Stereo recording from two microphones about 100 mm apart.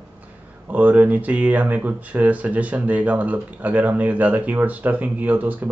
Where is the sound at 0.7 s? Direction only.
15° right (ahead or behind).